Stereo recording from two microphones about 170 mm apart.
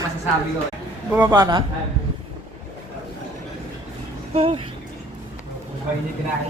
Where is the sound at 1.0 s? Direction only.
10° right (ahead or behind).